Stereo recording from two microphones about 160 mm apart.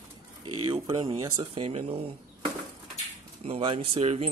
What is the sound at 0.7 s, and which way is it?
Speech, 30° right (ahead or behind).